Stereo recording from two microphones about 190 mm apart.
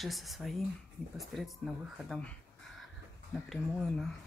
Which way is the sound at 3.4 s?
Centre (ahead or behind).